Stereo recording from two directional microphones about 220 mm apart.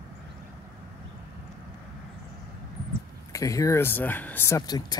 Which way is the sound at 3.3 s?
15° left (ahead or behind).